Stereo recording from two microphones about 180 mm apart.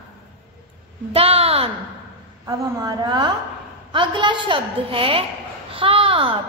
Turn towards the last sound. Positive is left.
turn(degrees=-30)  # may be behind; listen again after turning